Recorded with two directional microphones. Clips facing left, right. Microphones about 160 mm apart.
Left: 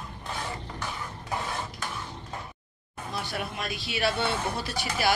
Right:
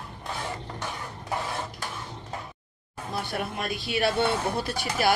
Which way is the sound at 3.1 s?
50° right (ahead or behind).